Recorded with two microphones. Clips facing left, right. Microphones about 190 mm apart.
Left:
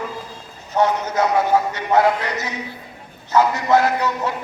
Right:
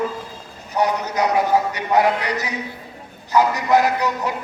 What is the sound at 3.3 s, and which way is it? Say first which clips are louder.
A man's voice: even; 15° right (ahead or behind).